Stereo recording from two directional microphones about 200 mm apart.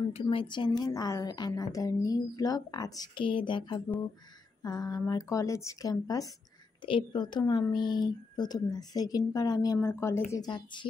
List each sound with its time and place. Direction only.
0.1 s a woman's voice: 25° left (ahead or behind)